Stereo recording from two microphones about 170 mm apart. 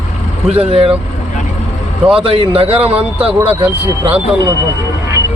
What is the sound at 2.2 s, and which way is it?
Speech, 35° right (ahead or behind).